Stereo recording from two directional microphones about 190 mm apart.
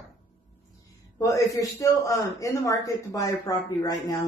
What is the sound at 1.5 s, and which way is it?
Speech, 20° left (ahead or behind).